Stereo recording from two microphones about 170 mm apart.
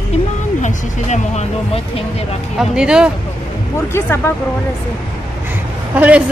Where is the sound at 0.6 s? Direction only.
45° left (ahead or behind).